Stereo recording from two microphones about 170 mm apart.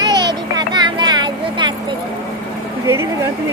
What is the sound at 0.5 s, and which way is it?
Vehicle, 25° right (ahead or behind).